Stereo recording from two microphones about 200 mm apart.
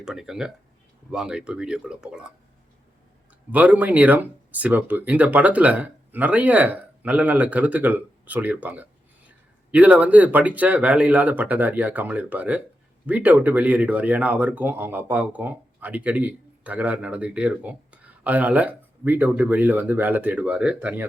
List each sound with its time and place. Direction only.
0.0 s speech: centre (ahead or behind)
3.5 s speech: 10° right (ahead or behind)